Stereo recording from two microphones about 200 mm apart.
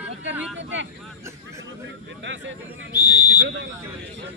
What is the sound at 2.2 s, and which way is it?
Speech, 65° right (ahead or behind).